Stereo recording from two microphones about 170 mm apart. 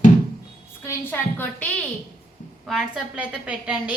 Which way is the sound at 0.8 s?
15° left (ahead or behind).